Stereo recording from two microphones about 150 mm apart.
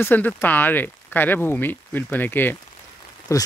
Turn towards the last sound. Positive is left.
turn(degrees=20)  # may be behind; listen again after turning